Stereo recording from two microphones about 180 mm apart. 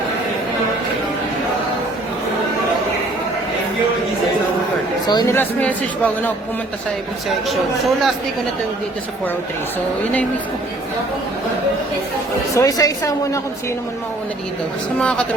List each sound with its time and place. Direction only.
5.0 s a woman's voice: 25° left (ahead or behind)
5.4 s speech: 10° left (ahead or behind)
7.4 s speech: centre (ahead or behind)
12.5 s a woman's voice: 20° left (ahead or behind)
14.9 s speech: 5° left (ahead or behind)